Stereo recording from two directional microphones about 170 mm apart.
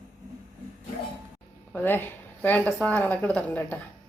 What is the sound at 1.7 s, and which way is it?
Speech, 10° left (ahead or behind).